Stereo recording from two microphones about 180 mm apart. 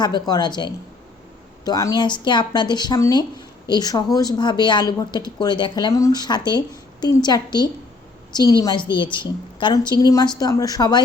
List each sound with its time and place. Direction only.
0.0 s speech: 25° left (ahead or behind)